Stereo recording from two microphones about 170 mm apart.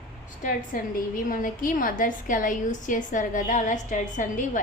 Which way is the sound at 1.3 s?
50° left (ahead or behind).